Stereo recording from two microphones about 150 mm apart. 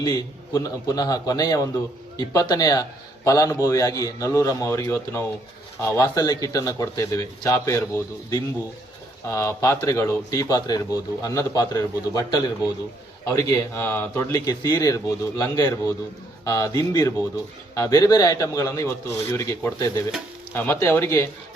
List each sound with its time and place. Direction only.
0.0 s a man's voice: 25° left (ahead or behind)